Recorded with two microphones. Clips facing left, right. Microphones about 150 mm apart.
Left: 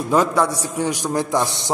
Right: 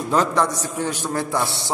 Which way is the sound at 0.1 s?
10° left (ahead or behind).